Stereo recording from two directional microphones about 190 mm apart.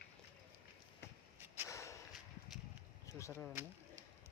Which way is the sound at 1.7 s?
15° left (ahead or behind).